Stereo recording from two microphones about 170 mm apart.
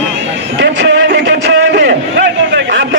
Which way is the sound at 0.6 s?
90° right.